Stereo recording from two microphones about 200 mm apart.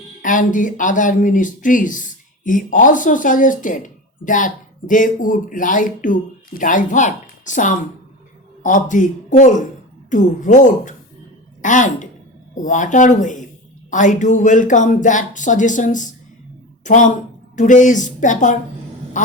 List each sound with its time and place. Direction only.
0.2 s a woman's voice: 40° left (ahead or behind)
19.2 s quack: 40° left (ahead or behind)